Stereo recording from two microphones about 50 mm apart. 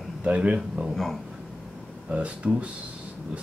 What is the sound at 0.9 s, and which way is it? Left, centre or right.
Speech, centre.